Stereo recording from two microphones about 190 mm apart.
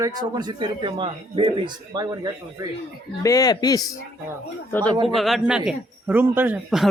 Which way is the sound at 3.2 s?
20° left (ahead or behind).